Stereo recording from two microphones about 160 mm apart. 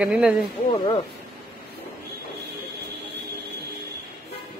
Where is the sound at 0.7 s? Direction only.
30° left (ahead or behind).